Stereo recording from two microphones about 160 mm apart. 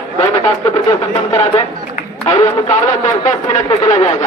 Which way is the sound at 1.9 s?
40° left (ahead or behind).